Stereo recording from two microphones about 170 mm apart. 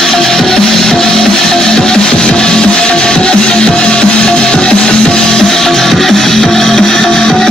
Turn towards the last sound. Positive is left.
turn(degrees=5)  # may be behind; listen again after turning